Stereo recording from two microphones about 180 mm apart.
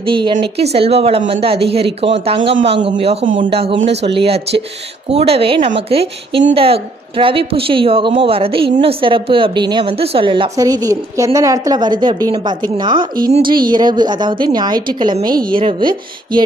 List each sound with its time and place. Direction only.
0.0 s a woman's voice: 25° right (ahead or behind)